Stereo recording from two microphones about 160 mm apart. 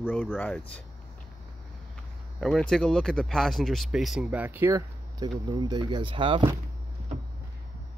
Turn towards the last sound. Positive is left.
turn(degrees=-30)  # may be behind; listen again after turning